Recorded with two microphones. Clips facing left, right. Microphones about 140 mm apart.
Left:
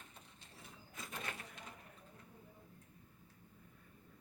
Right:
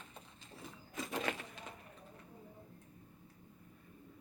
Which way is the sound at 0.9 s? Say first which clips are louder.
Right 9 dB; 90° right.